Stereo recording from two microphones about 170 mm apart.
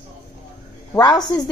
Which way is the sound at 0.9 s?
25° left (ahead or behind).